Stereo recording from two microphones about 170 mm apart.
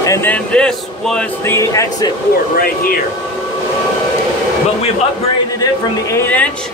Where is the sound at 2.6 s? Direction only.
60° left (ahead or behind).